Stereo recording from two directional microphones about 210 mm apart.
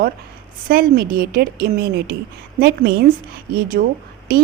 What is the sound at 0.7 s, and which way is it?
Speech, 45° right (ahead or behind).